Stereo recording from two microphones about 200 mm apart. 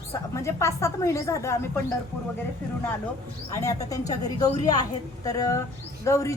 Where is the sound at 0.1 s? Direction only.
15° left (ahead or behind).